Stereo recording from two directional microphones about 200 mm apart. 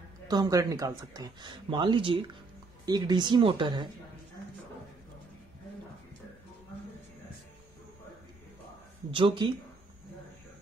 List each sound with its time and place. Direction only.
0.3 s speech: 20° right (ahead or behind)
9.1 s speech: 25° right (ahead or behind)